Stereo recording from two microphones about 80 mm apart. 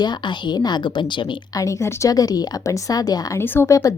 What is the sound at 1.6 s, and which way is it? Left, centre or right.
A woman's voice, left.